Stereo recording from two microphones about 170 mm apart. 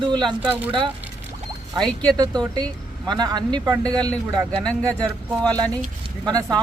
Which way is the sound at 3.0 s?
25° right (ahead or behind).